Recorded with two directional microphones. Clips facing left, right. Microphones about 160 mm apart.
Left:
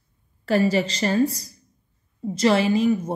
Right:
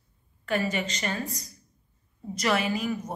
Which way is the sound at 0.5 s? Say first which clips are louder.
Left 8 dB; 35° left (ahead or behind).